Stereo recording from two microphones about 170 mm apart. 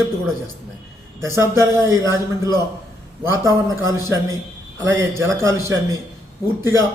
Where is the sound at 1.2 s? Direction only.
15° right (ahead or behind).